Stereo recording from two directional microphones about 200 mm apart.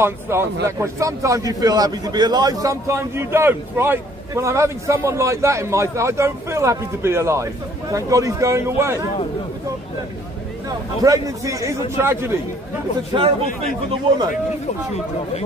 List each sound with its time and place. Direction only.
0.0 s a man's voice: 10° right (ahead or behind)
11.0 s a man's voice: 15° right (ahead or behind)